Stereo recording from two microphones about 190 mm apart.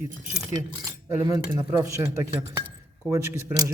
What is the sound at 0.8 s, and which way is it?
Cutlery, 20° right (ahead or behind).